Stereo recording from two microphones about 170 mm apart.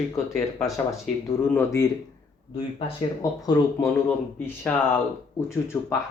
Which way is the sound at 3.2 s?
20° left (ahead or behind).